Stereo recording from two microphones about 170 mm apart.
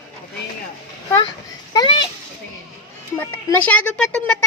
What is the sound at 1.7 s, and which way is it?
Speech, 25° left (ahead or behind).